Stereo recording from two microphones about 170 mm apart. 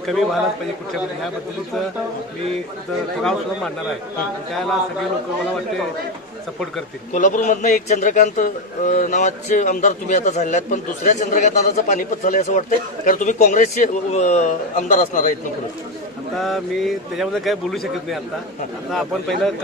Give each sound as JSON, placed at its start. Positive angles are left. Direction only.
{"t": 0.0, "sound": "a man's voice", "side_deg": 0}
{"t": 3.2, "sound": "a man's voice", "side_deg": 5}
{"t": 7.2, "sound": "a man's voice", "side_deg": 45}
{"t": 16.3, "sound": "a man's voice", "side_deg": 0}